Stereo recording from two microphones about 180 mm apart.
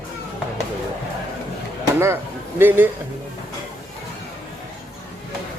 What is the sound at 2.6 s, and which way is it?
Speech, 10° right (ahead or behind).